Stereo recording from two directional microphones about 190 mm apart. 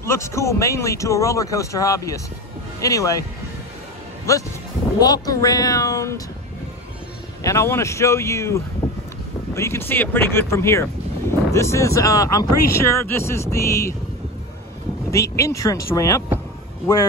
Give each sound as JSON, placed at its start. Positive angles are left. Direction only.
{"t": 0.0, "sound": "speech", "side_deg": 15}
{"t": 4.3, "sound": "speech", "side_deg": 15}
{"t": 7.4, "sound": "speech", "side_deg": 15}
{"t": 15.0, "sound": "speech", "side_deg": 15}